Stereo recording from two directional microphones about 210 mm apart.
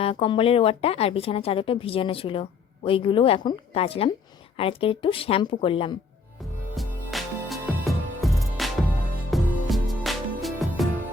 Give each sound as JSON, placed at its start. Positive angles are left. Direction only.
{"t": 0.0, "sound": "a woman's voice", "side_deg": 25}
{"t": 6.7, "sound": "music", "side_deg": 0}